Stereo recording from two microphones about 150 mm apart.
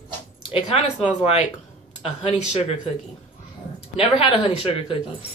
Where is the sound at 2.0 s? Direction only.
40° left (ahead or behind).